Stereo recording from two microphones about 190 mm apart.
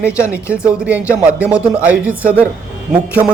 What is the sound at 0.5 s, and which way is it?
A man's voice, 5° right (ahead or behind).